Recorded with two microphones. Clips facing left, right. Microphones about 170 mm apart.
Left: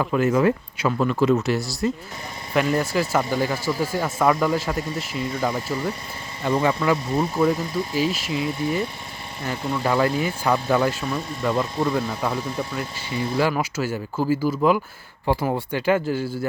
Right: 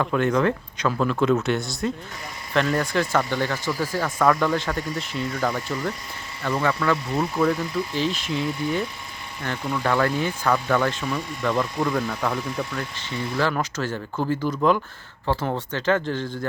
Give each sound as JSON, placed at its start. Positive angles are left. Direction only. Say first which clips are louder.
{"t": 0.0, "sound": "speech", "louder": "left 2 dB", "side_deg": 5}
{"t": 3.7, "sound": "speech", "louder": "left 2 dB", "side_deg": 25}
{"t": 4.0, "sound": "speech", "louder": "even", "side_deg": 10}
{"t": 6.4, "sound": "speech", "louder": "left 2 dB", "side_deg": 20}
{"t": 7.4, "sound": "speech", "louder": "left 1 dB", "side_deg": 10}